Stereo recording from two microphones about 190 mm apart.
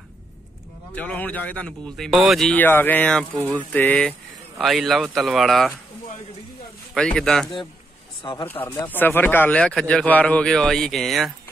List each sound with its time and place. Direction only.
0.9 s a man's voice: 5° left (ahead or behind)
6.9 s a man's voice: 5° left (ahead or behind)
8.2 s speech: 25° left (ahead or behind)
8.5 s a man's voice: 10° left (ahead or behind)